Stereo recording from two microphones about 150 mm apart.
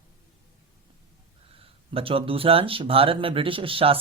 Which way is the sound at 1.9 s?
40° right (ahead or behind).